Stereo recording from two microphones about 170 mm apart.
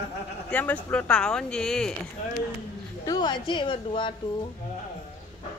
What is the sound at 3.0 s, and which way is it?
A woman's voice, 25° left (ahead or behind).